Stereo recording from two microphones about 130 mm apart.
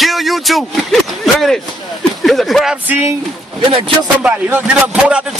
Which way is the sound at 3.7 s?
45° right (ahead or behind).